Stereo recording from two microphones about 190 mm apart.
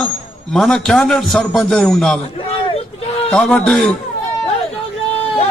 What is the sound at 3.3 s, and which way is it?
Speech, 5° left (ahead or behind).